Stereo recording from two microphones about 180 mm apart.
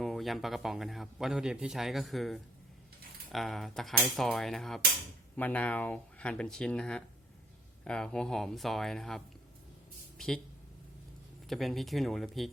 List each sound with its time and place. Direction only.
0.0 s a man's voice: centre (ahead or behind)
11.4 s a man's voice: centre (ahead or behind)